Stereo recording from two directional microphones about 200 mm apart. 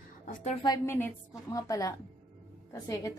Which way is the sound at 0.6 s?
15° left (ahead or behind).